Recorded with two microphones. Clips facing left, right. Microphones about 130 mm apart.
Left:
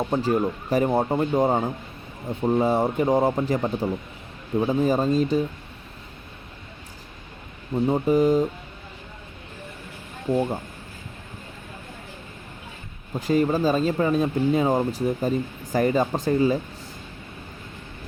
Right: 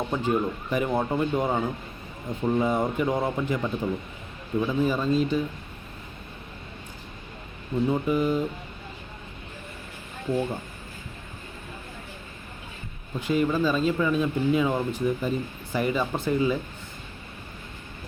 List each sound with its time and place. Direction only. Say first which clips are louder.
0.1 s speech: left 2 dB; 35° left (ahead or behind)
7.9 s speech: left 6 dB; 35° left (ahead or behind)
10.3 s speech: left 4 dB; 30° left (ahead or behind)
13.1 s speech: left 3 dB; 40° left (ahead or behind)